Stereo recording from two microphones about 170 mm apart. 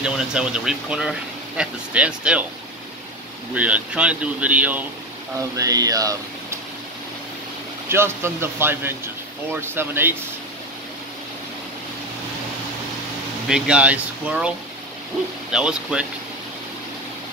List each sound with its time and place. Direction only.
0.0 s speech: 5° right (ahead or behind)
3.5 s speech: 10° right (ahead or behind)
5.6 s speech: 20° right (ahead or behind)
7.9 s speech: 15° right (ahead or behind)
13.5 s speech: 5° right (ahead or behind)
15.5 s speech: 5° right (ahead or behind)